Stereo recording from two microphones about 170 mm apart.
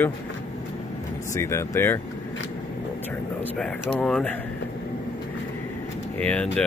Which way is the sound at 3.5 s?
5° left (ahead or behind).